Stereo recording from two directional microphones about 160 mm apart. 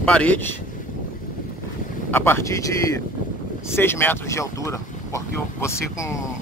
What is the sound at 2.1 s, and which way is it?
Speech, 15° left (ahead or behind).